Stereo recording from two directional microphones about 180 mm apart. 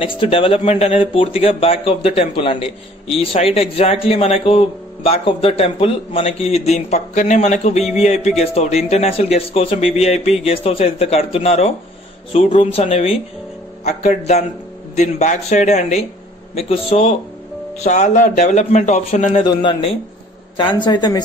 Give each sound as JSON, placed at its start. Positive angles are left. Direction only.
{"t": 0.0, "sound": "speech", "side_deg": 30}
{"t": 19.4, "sound": "a man's voice", "side_deg": 25}